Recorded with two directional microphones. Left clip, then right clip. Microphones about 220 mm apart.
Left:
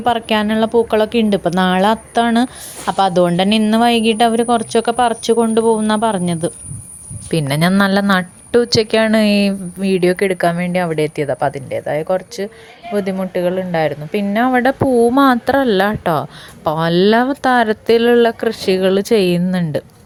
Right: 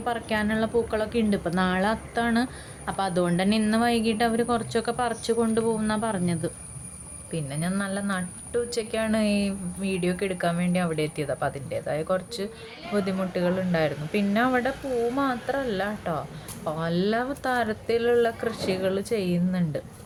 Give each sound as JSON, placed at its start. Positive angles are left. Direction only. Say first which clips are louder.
{"t": 0.0, "sound": "a woman's voice", "louder": "left 12 dB", "side_deg": 35}
{"t": 7.3, "sound": "a woman's voice", "louder": "left 16 dB", "side_deg": 45}
{"t": 14.6, "sound": "a woman's voice", "louder": "left 14 dB", "side_deg": 40}